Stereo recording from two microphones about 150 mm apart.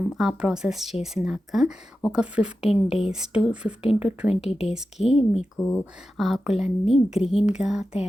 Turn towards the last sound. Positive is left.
turn(degrees=-5)  # may be behind; listen again after turning